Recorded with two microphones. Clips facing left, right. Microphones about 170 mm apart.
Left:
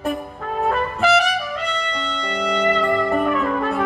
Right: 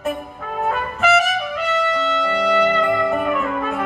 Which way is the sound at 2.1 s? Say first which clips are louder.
Right 1 dB; 5° right (ahead or behind).